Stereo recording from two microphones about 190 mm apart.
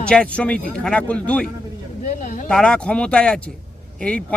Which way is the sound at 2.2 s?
45° left (ahead or behind).